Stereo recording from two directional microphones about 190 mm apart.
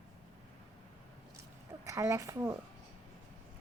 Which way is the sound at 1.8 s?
15° right (ahead or behind).